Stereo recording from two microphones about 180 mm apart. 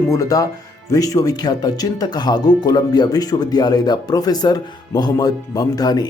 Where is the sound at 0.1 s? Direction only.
20° left (ahead or behind).